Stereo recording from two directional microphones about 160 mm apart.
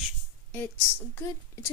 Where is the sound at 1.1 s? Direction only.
15° left (ahead or behind).